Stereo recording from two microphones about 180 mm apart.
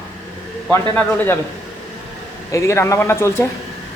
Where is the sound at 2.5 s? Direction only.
15° left (ahead or behind).